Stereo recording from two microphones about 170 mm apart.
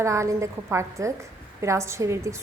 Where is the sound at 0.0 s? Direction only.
15° right (ahead or behind).